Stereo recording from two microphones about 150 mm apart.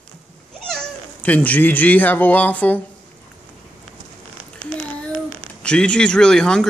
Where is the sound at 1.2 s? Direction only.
10° left (ahead or behind).